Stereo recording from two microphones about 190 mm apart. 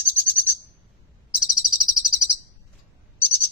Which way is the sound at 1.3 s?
Centre (ahead or behind).